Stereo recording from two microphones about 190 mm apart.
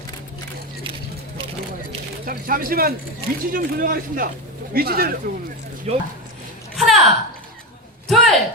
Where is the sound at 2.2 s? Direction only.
50° right (ahead or behind).